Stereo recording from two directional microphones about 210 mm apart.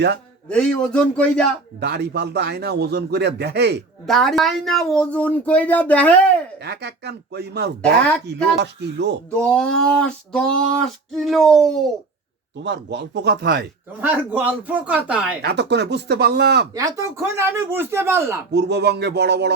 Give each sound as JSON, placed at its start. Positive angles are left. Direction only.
{"t": 0.4, "sound": "speech", "side_deg": 5}
{"t": 1.8, "sound": "a man's voice", "side_deg": -50}
{"t": 4.0, "sound": "speech", "side_deg": 0}
{"t": 6.6, "sound": "a man's voice", "side_deg": -50}
{"t": 9.3, "sound": "speech", "side_deg": 5}
{"t": 12.6, "sound": "a man's voice", "side_deg": -55}
{"t": 14.0, "sound": "speech", "side_deg": -10}
{"t": 15.4, "sound": "a man's voice", "side_deg": -55}
{"t": 16.7, "sound": "speech", "side_deg": -15}
{"t": 18.5, "sound": "a man's voice", "side_deg": -55}